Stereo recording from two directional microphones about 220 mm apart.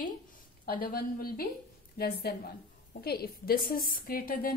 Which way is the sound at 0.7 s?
40° left (ahead or behind).